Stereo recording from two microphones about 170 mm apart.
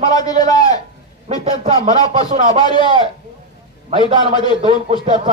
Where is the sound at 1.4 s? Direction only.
35° right (ahead or behind).